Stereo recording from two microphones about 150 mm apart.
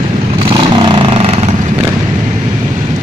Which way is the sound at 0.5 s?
30° right (ahead or behind).